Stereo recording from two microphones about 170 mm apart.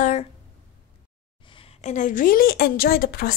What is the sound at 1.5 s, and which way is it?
A woman's voice, 35° left (ahead or behind).